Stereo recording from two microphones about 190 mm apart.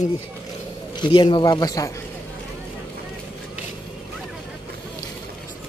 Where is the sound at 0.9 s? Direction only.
25° left (ahead or behind).